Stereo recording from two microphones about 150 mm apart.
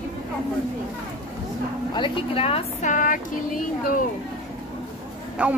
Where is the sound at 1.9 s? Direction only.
35° left (ahead or behind).